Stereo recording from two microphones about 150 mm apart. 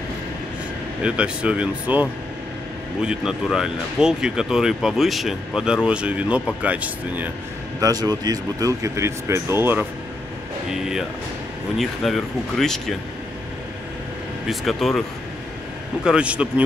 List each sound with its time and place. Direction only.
1.0 s speech: 5° right (ahead or behind)
7.8 s speech: 25° right (ahead or behind)
10.7 s speech: 5° right (ahead or behind)
14.5 s speech: centre (ahead or behind)